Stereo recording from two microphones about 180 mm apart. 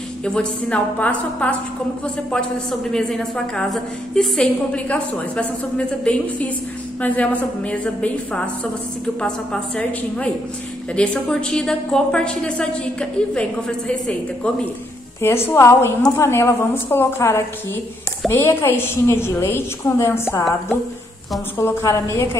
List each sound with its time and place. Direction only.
0.2 s a woman's voice: 5° left (ahead or behind)
21.5 s a woman's voice: 15° left (ahead or behind)